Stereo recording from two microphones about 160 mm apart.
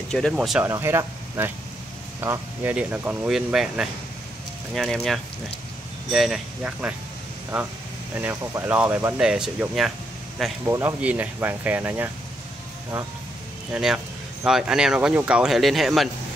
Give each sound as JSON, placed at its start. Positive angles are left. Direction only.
{"t": 0.1, "sound": "speech", "side_deg": 0}
{"t": 0.7, "sound": "speech", "side_deg": -15}
{"t": 8.2, "sound": "speech", "side_deg": -15}
{"t": 10.6, "sound": "speech", "side_deg": -15}
{"t": 13.7, "sound": "speech", "side_deg": -5}